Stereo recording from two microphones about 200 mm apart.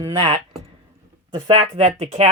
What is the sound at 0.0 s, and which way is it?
Speech, 25° right (ahead or behind).